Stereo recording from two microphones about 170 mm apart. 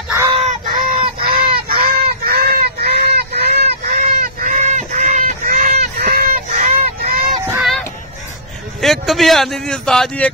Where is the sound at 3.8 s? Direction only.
55° right (ahead or behind).